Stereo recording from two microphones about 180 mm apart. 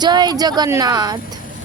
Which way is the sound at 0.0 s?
25° right (ahead or behind).